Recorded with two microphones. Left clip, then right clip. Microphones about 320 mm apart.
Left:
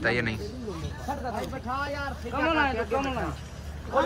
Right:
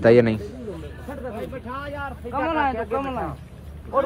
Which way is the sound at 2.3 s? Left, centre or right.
Right.